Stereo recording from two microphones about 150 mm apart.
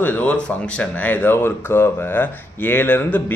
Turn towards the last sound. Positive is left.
turn(degrees=10)  # may be behind; listen again after turning